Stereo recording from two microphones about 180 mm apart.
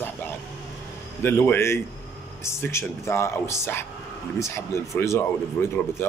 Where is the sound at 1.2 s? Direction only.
10° left (ahead or behind).